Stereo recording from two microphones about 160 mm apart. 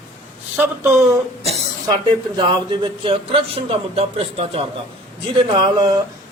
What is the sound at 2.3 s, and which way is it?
A man's voice, 30° right (ahead or behind).